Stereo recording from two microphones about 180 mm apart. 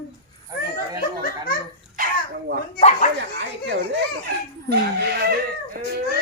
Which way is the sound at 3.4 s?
80° right.